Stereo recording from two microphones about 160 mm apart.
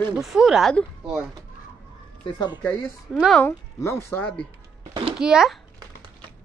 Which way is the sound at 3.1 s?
Centre (ahead or behind).